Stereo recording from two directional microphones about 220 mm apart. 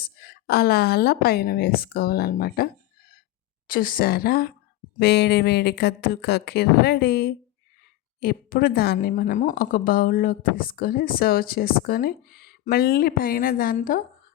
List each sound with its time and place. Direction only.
0.0 s a woman's voice: 45° left (ahead or behind)
3.7 s a woman's voice: 40° left (ahead or behind)